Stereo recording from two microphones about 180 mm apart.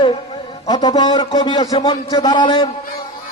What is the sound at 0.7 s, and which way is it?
A man's voice, 25° left (ahead or behind).